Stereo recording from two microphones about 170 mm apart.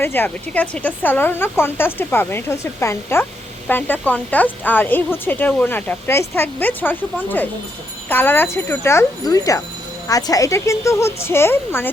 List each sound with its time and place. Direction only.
0.0 s speech: 10° left (ahead or behind)